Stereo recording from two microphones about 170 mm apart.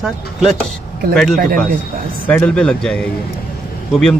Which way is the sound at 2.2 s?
10° left (ahead or behind).